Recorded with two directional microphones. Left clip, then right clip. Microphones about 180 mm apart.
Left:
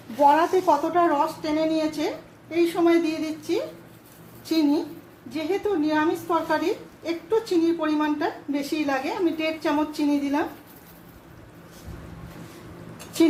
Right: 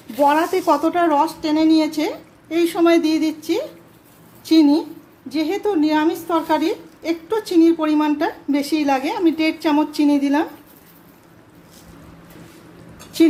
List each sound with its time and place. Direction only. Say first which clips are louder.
0.3 s speech: right 1 dB; 35° right (ahead or behind)
0.9 s a woman's voice: right 4 dB; 55° right (ahead or behind)
5.3 s a woman's voice: right 5 dB; 60° right (ahead or behind)